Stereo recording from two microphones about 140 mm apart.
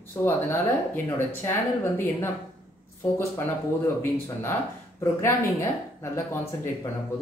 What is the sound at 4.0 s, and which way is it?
Speech, 15° left (ahead or behind).